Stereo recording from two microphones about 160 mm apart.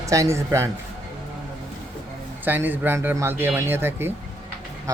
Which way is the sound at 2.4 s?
10° right (ahead or behind).